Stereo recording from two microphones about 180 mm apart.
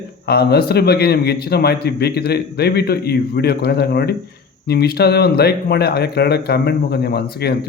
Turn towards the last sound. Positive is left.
turn(degrees=60)  # may be behind; listen again after turning